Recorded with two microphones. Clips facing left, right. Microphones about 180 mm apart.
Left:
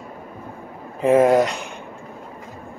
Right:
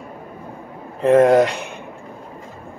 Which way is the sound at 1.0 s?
5° left (ahead or behind).